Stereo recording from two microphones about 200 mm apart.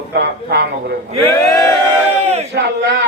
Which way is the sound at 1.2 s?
10° left (ahead or behind).